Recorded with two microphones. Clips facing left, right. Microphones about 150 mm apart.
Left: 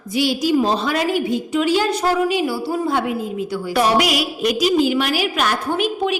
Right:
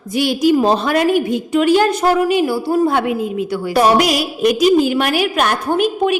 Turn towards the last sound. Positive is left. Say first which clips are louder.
# right 5 dB
turn(degrees=-55)  # may be behind; listen again after turning